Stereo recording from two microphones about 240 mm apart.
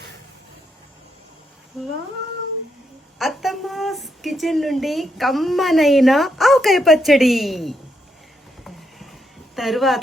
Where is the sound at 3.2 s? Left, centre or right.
Centre.